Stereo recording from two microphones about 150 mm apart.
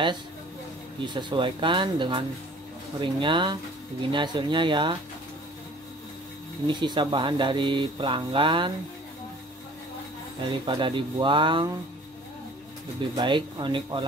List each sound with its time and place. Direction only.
1.0 s speech: 30° right (ahead or behind)
6.7 s speech: 30° right (ahead or behind)
10.5 s speech: 30° right (ahead or behind)
13.1 s speech: 30° right (ahead or behind)